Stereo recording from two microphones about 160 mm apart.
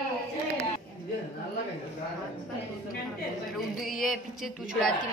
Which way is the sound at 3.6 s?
Centre (ahead or behind).